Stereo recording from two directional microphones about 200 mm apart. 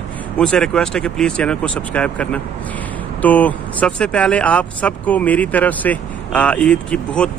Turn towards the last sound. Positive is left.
turn(degrees=5)  # may be behind; listen again after turning